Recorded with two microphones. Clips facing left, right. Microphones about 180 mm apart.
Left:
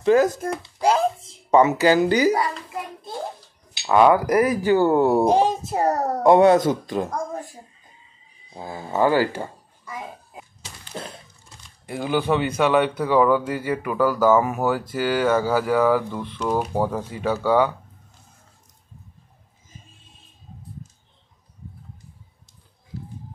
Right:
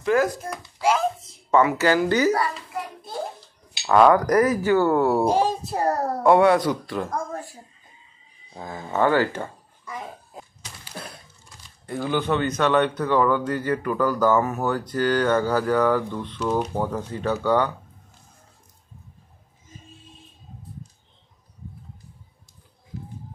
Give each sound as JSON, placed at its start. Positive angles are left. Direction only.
{"t": 0.0, "sound": "speech", "side_deg": 20}
{"t": 0.7, "sound": "a child's voice", "side_deg": 35}
{"t": 1.5, "sound": "speech", "side_deg": 20}
{"t": 3.8, "sound": "speech", "side_deg": 10}
{"t": 8.5, "sound": "a child's voice", "side_deg": 10}
{"t": 10.6, "sound": "a sound", "side_deg": 25}
{"t": 11.8, "sound": "speech", "side_deg": 10}